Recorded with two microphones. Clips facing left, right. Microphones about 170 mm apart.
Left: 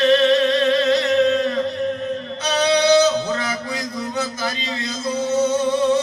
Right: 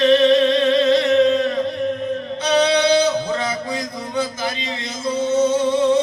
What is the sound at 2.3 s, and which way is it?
Music, 25° right (ahead or behind).